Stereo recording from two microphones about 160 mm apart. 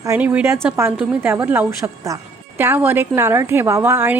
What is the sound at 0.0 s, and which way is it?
A woman's voice, 15° right (ahead or behind).